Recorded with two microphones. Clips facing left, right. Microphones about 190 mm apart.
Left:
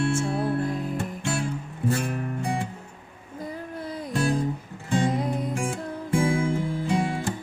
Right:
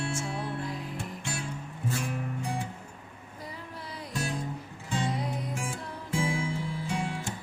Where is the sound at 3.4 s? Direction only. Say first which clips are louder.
Left 9 dB; 50° left (ahead or behind).